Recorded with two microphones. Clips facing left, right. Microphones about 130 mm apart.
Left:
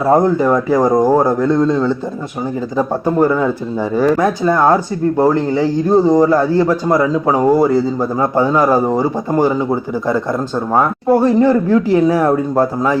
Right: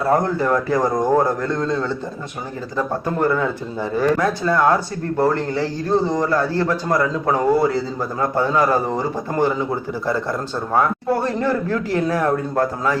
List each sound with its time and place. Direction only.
0.0 s a man's voice: 15° left (ahead or behind)
4.5 s speech: 30° left (ahead or behind)
5.1 s a man's voice: 15° left (ahead or behind)
8.2 s speech: 25° left (ahead or behind)
8.6 s a man's voice: 10° left (ahead or behind)
10.7 s speech: 25° left (ahead or behind)
11.2 s a man's voice: 15° left (ahead or behind)